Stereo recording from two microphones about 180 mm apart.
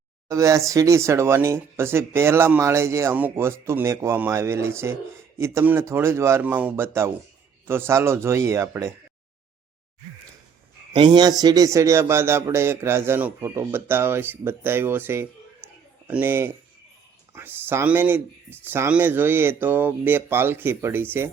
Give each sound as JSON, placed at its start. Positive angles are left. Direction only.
{"t": 0.3, "sound": "speech", "side_deg": -15}
{"t": 10.9, "sound": "speech", "side_deg": -25}
{"t": 15.6, "sound": "a sound", "side_deg": -10}
{"t": 16.0, "sound": "speech", "side_deg": -10}